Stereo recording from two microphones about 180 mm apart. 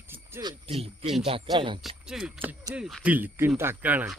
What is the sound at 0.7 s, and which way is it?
Speech, 35° right (ahead or behind).